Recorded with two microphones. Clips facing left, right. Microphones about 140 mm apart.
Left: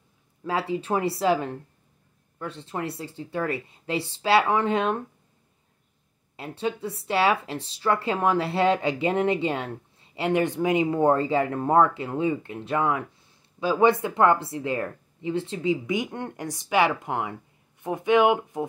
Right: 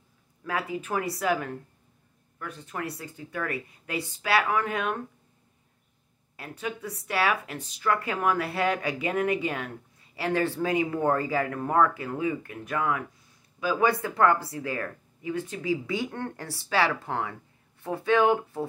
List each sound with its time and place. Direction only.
0.4 s speech: 25° left (ahead or behind)
6.3 s speech: 25° left (ahead or behind)